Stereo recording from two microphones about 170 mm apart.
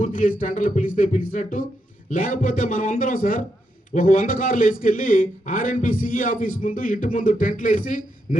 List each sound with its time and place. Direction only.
0.0 s a man's voice: 50° left (ahead or behind)